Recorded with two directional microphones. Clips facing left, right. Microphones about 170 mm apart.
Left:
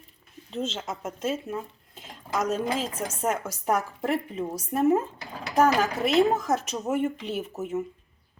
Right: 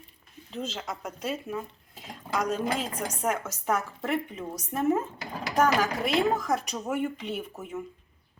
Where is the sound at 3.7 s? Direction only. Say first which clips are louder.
Left 3 dB; 35° left (ahead or behind).